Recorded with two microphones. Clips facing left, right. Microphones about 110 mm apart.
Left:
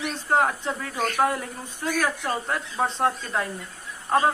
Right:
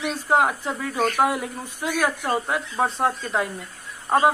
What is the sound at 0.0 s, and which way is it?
Speech, 5° right (ahead or behind).